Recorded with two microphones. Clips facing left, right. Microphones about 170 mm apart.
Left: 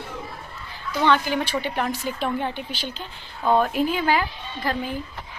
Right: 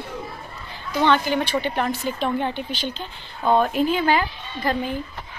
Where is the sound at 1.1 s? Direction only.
5° left (ahead or behind).